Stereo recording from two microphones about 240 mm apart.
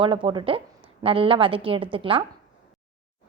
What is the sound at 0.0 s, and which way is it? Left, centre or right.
A woman's voice, right.